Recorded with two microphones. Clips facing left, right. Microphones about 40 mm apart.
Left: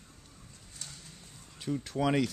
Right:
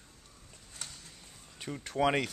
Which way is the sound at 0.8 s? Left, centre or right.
Right.